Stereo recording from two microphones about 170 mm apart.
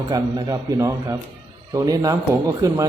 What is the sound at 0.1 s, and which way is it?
A man's voice, 20° right (ahead or behind).